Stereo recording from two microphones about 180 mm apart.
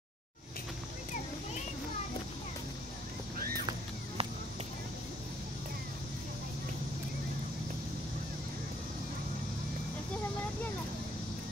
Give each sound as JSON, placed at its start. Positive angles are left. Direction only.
{"t": 4.2, "sound": "run", "side_deg": -35}